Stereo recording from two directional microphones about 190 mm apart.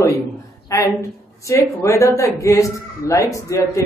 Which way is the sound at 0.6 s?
15° left (ahead or behind).